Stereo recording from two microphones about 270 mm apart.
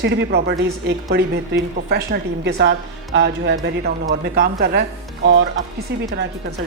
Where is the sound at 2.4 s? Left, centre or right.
Right.